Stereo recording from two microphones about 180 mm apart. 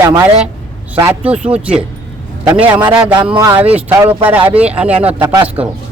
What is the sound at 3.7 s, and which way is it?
A man's voice, 10° right (ahead or behind).